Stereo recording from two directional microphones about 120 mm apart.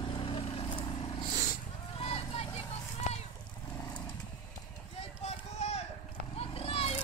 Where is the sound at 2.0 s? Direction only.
60° left (ahead or behind).